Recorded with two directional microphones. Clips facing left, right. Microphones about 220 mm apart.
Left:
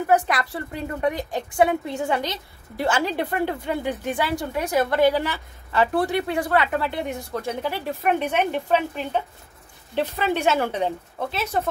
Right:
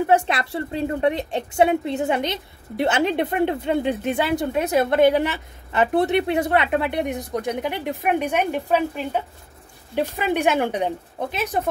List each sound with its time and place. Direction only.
0.0 s a woman's voice: 25° right (ahead or behind)